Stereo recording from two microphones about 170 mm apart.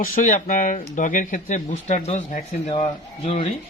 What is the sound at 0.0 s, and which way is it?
Speech, 50° left (ahead or behind).